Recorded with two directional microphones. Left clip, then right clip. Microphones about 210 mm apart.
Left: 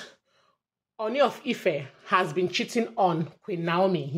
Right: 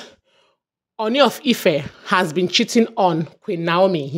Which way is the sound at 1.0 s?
50° right (ahead or behind).